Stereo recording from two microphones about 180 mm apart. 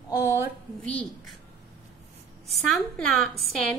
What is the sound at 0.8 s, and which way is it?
Speech, 5° left (ahead or behind).